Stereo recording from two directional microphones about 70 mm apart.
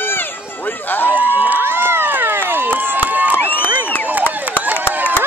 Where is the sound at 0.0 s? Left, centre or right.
Left.